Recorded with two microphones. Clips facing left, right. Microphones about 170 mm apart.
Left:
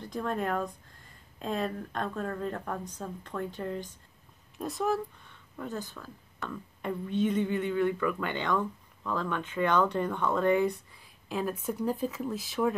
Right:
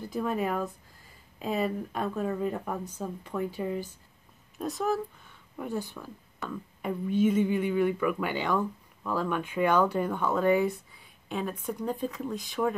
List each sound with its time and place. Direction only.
0.0 s a woman's voice: 5° right (ahead or behind)